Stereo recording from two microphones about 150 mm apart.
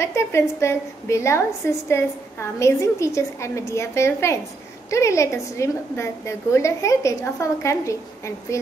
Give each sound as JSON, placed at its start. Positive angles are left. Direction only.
{"t": 0.0, "sound": "a woman's voice", "side_deg": 20}